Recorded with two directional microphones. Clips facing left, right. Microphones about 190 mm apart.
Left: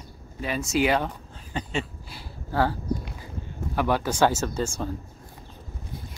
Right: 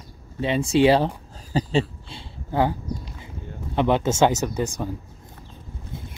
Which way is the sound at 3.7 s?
20° right (ahead or behind).